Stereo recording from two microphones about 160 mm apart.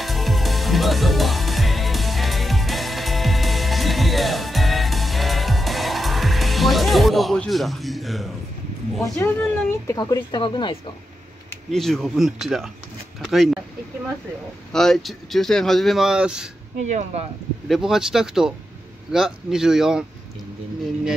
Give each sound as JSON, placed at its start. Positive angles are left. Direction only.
{"t": 0.0, "sound": "music", "side_deg": 0}
{"t": 9.2, "sound": "speech", "side_deg": 15}
{"t": 11.7, "sound": "speech", "side_deg": 0}
{"t": 14.7, "sound": "speech", "side_deg": 0}
{"t": 16.7, "sound": "speech", "side_deg": -45}
{"t": 17.6, "sound": "speech", "side_deg": 0}